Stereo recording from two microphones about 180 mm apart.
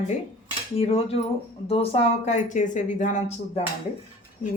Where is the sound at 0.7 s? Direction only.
35° left (ahead or behind).